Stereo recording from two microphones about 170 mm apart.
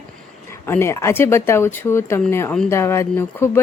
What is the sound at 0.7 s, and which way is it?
Speech, 15° left (ahead or behind).